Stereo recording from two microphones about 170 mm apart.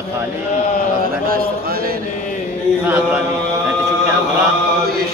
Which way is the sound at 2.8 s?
15° right (ahead or behind).